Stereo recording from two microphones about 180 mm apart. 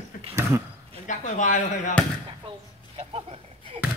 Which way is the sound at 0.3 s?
15° right (ahead or behind).